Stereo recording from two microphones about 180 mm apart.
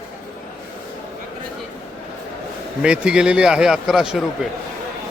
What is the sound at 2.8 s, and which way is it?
A man's voice, 5° right (ahead or behind).